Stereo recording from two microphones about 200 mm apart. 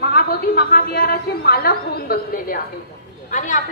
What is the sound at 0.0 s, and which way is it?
A woman's voice, 55° left (ahead or behind).